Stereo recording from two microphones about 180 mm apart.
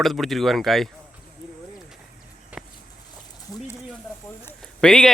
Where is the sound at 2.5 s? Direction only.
10° right (ahead or behind).